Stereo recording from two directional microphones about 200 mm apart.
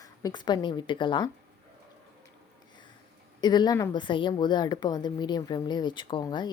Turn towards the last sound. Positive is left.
turn(degrees=20)  # may be behind; listen again after turning